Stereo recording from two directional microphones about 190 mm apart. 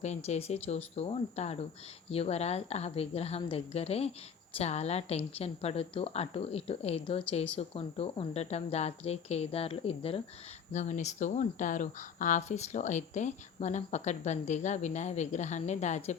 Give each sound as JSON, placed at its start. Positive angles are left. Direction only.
{"t": 0.0, "sound": "speech", "side_deg": 35}